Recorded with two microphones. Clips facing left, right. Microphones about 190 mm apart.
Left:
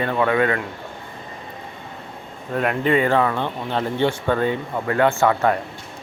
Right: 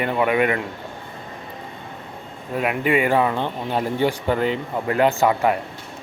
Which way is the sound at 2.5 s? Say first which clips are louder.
Left 1 dB; 5° right (ahead or behind).